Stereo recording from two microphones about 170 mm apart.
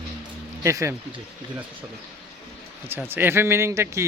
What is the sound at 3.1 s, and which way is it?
Speech, 15° right (ahead or behind).